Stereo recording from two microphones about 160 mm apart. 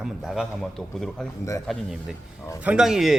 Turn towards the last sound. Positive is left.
turn(degrees=0)  # may be behind; listen again after turning